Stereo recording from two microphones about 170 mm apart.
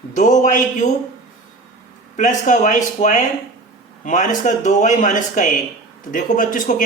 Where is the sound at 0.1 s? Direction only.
45° left (ahead or behind).